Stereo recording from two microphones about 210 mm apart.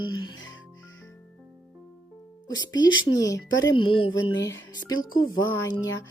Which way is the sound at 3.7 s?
25° left (ahead or behind).